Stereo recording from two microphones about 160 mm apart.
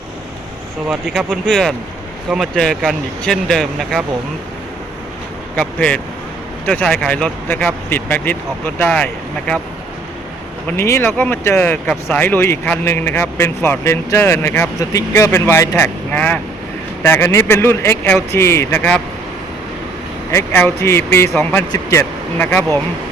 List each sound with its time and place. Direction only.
0.9 s speech: centre (ahead or behind)
5.5 s speech: 5° left (ahead or behind)
10.7 s speech: 15° left (ahead or behind)
20.3 s speech: 15° left (ahead or behind)